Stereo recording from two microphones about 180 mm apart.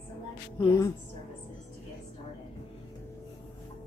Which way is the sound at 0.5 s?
15° left (ahead or behind).